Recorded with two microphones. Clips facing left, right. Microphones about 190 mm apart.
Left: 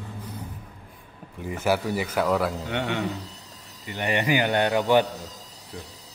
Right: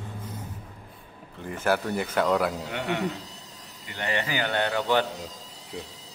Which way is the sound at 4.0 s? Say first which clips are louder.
Left 5 dB; 15° left (ahead or behind).